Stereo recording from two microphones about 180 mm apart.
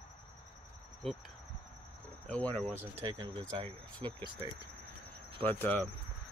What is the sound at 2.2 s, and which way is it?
Cricket, 5° left (ahead or behind).